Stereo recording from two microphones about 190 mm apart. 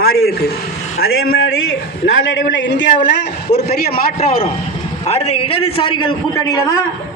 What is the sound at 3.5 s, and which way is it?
Speech, 55° left (ahead or behind).